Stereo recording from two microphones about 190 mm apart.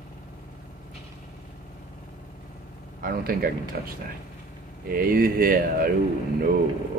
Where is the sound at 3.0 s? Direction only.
50° right (ahead or behind).